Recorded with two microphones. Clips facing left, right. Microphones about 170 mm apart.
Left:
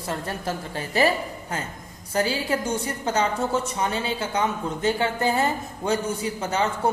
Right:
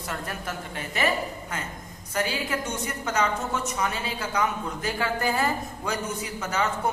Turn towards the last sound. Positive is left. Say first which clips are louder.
# left 3 dB
turn(degrees=30)  # may be behind; listen again after turning